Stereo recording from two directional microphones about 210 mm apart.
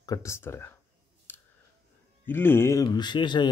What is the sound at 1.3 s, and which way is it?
Scissors, 10° left (ahead or behind).